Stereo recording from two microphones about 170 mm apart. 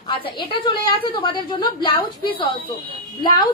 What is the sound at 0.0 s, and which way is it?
A woman's voice, 30° left (ahead or behind).